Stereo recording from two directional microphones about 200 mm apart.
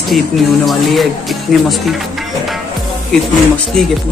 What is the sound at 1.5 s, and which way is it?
Speech, centre (ahead or behind).